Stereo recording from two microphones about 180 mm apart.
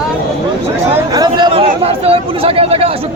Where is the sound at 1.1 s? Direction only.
25° right (ahead or behind).